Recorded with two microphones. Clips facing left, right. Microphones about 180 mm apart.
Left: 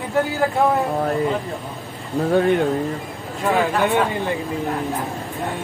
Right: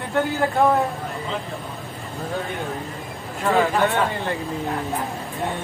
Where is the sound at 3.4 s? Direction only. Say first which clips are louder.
Even; 15° left (ahead or behind).